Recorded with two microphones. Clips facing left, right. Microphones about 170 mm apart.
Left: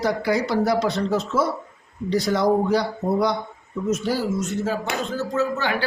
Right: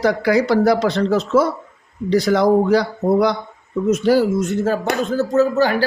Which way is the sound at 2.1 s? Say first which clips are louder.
Right 5 dB; 85° right.